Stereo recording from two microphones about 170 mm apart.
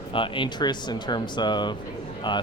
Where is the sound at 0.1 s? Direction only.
30° left (ahead or behind).